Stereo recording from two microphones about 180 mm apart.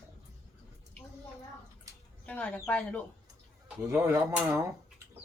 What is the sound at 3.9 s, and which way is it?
Speech, 5° right (ahead or behind).